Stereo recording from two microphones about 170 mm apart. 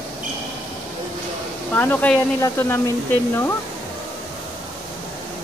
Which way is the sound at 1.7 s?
10° left (ahead or behind).